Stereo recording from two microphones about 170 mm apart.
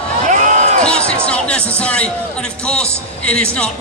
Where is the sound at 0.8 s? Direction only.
5° left (ahead or behind).